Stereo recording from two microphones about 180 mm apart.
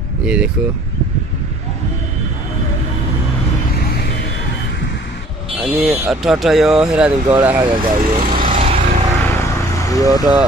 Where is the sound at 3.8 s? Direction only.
60° left (ahead or behind).